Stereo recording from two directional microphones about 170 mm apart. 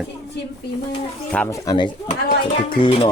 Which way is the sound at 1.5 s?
20° left (ahead or behind).